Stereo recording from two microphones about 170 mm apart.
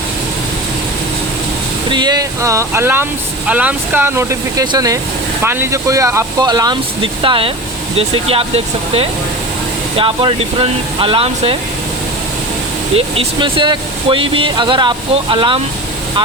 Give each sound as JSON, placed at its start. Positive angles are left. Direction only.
{"t": 1.9, "sound": "speech", "side_deg": -25}
{"t": 13.0, "sound": "speech", "side_deg": -30}